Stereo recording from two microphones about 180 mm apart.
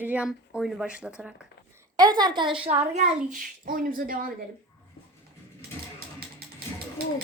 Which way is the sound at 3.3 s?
50° right (ahead or behind).